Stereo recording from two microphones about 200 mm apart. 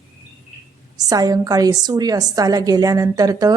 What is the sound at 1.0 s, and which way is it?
Speech, 20° right (ahead or behind).